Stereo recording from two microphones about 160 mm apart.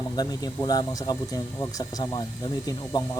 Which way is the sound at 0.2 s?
25° left (ahead or behind).